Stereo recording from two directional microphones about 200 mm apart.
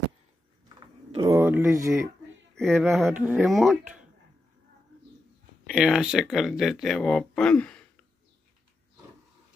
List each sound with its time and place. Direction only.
0.7 s a sound: 20° right (ahead or behind)
1.4 s speech: 10° right (ahead or behind)
2.5 s speech: centre (ahead or behind)
5.7 s speech: 5° right (ahead or behind)